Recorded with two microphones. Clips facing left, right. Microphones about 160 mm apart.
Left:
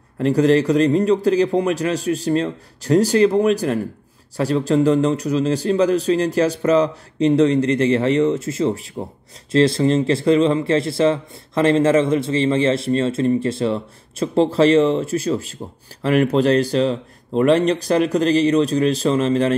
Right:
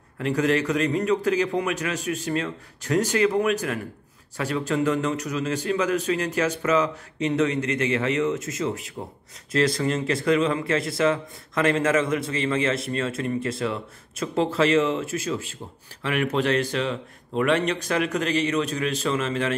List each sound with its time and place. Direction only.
0.2 s a man's voice: 35° left (ahead or behind)